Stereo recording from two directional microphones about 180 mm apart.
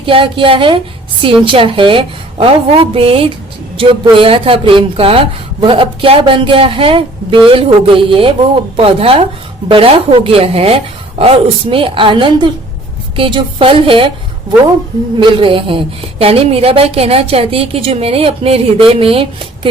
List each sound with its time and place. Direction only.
0.0 s a woman's voice: 30° right (ahead or behind)
15.2 s a woman's voice: 25° right (ahead or behind)